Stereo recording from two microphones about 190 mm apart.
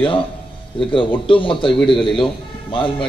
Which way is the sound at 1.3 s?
25° left (ahead or behind).